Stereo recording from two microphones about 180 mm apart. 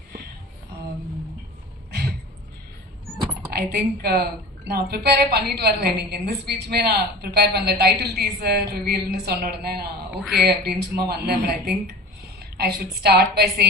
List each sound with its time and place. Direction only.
3.7 s a woman's voice: 60° right (ahead or behind)
10.2 s speech: centre (ahead or behind)
10.4 s a woman's voice: 60° right (ahead or behind)